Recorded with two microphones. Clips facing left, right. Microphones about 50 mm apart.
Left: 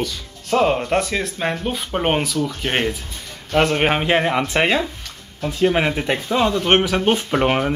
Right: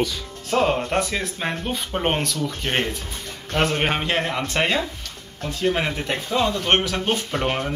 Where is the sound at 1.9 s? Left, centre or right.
Centre.